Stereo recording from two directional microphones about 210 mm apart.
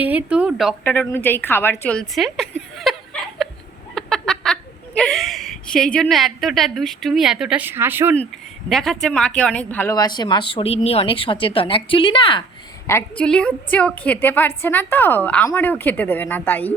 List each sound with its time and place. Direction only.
0.0 s speech: 5° right (ahead or behind)
0.9 s a woman's voice: 10° left (ahead or behind)
2.7 s laughter: centre (ahead or behind)
3.9 s fowl: centre (ahead or behind)
4.9 s a woman's voice: 5° left (ahead or behind)
8.7 s a woman's voice: centre (ahead or behind); by 12.4 s 25° left (ahead or behind)
12.9 s a woman's voice: 10° left (ahead or behind)